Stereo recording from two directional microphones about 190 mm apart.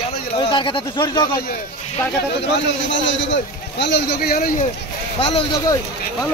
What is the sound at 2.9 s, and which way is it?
A man's voice, 75° left (ahead or behind).